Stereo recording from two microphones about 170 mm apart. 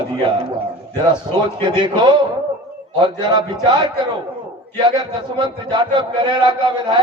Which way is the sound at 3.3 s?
25° right (ahead or behind).